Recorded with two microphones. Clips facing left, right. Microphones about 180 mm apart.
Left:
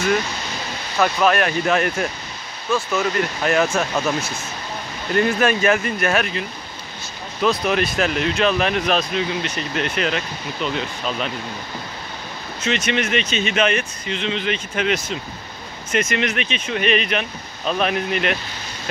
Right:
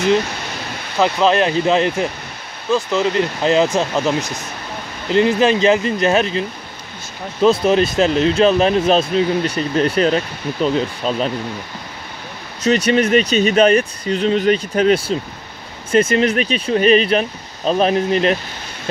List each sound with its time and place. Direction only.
0.9 s speech: 25° right (ahead or behind)
7.4 s speech: 30° right (ahead or behind)
12.6 s speech: 35° right (ahead or behind)